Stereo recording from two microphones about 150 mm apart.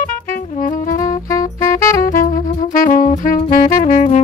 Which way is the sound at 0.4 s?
65° left (ahead or behind).